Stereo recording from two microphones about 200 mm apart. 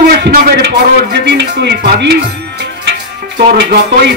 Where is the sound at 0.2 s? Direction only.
55° right (ahead or behind).